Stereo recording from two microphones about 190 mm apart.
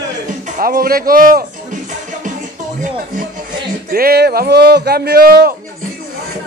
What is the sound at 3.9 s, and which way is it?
Speech, 55° right (ahead or behind).